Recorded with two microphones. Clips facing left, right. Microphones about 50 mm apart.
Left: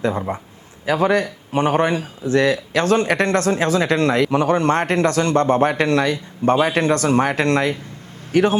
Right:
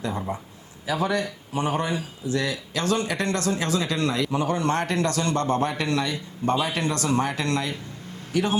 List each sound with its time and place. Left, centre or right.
0.3 s speech: left